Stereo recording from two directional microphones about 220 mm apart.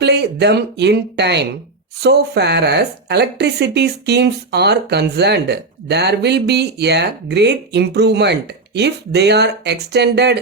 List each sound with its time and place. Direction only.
0.0 s speech: 50° right (ahead or behind)